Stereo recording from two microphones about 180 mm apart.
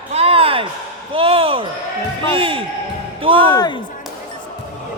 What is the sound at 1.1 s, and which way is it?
Speech, 30° right (ahead or behind).